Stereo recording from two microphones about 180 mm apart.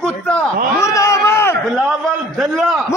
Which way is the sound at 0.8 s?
15° left (ahead or behind).